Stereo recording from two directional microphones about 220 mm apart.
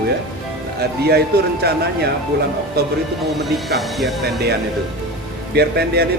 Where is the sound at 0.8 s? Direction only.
45° right (ahead or behind).